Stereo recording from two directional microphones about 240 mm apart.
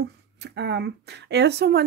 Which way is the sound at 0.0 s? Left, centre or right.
Right.